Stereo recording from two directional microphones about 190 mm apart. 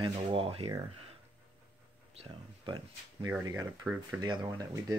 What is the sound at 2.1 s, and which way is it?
Speech, 30° right (ahead or behind).